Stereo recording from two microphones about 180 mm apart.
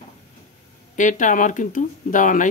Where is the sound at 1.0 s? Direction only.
45° left (ahead or behind).